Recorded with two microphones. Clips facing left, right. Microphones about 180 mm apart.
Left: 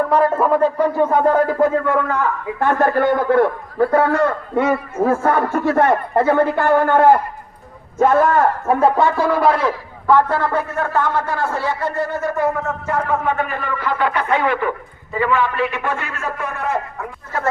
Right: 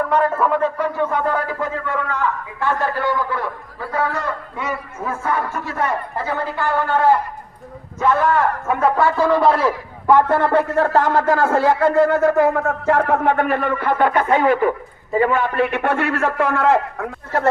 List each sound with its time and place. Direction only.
0.1 s a man's voice: 35° left (ahead or behind)
9.0 s speech: 15° left (ahead or behind); by 9.7 s centre (ahead or behind)
10.1 s a man's voice: 20° right (ahead or behind); by 11.6 s 50° right (ahead or behind)
12.3 s speech: 65° right (ahead or behind)